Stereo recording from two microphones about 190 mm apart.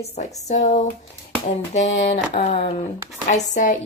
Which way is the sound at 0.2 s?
35° left (ahead or behind).